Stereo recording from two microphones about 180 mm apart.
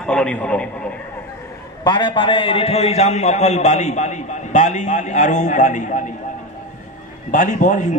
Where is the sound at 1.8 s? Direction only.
25° left (ahead or behind); by 6.0 s 45° left (ahead or behind).